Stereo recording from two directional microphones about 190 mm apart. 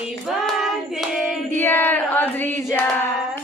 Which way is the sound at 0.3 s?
Centre (ahead or behind).